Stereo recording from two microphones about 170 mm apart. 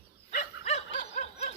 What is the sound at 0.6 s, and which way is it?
Snicker, 45° left (ahead or behind).